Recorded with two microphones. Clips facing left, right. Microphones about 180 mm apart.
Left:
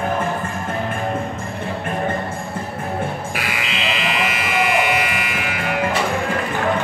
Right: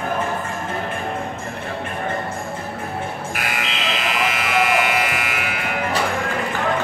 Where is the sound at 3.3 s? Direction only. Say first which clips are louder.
Left 1 dB; 50° right (ahead or behind).